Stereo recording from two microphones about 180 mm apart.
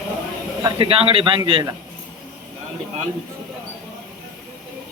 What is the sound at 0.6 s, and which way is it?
A man's voice, 30° right (ahead or behind).